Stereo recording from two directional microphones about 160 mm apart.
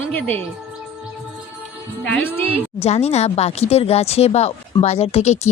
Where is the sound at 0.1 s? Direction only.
10° left (ahead or behind).